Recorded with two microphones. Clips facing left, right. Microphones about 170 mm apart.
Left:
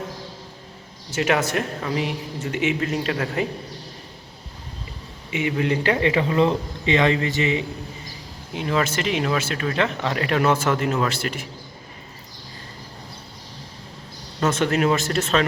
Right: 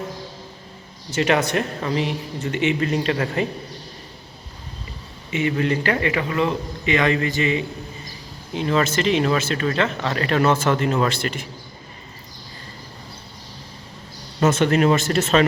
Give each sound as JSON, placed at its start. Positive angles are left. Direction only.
{"t": 1.1, "sound": "speech", "side_deg": 5}
{"t": 5.3, "sound": "a man's voice", "side_deg": 10}
{"t": 8.5, "sound": "speech", "side_deg": 10}
{"t": 14.4, "sound": "speech", "side_deg": 0}